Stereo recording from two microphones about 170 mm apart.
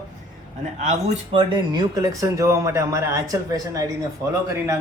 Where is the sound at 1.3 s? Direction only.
25° right (ahead or behind).